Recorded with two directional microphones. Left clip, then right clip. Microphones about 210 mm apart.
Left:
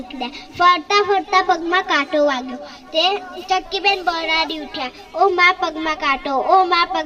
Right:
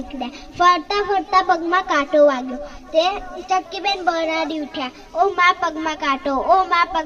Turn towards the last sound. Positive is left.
turn(degrees=30)  # may be behind; listen again after turning